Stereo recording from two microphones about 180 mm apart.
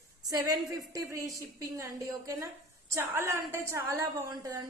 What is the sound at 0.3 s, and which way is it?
A woman's voice, 20° right (ahead or behind).